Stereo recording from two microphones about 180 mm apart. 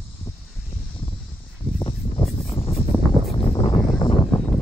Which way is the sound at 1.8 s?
30° left (ahead or behind).